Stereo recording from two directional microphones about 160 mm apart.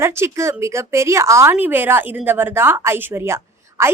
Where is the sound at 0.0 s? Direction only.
15° right (ahead or behind).